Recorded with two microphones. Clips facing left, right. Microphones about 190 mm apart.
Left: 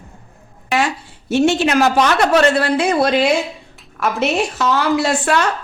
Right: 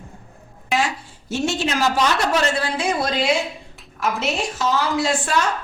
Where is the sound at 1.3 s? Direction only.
65° left (ahead or behind).